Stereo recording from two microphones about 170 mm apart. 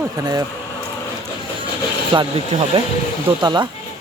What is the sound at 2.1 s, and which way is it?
A man's voice, 30° right (ahead or behind).